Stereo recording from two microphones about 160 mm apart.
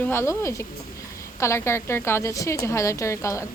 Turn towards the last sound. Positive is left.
turn(degrees=20)  # may be behind; listen again after turning